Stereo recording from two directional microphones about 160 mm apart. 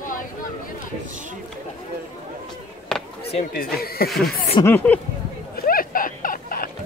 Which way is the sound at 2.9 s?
5° left (ahead or behind).